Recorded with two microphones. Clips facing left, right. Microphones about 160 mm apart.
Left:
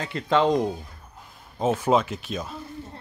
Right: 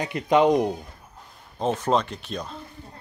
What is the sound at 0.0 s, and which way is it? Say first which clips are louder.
Speech: right 3 dB; 20° right (ahead or behind).